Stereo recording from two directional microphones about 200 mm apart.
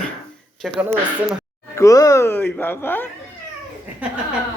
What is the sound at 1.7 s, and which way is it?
Speech, 15° left (ahead or behind).